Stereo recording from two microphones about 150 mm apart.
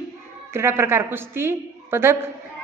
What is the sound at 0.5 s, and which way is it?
A woman's voice, 15° right (ahead or behind).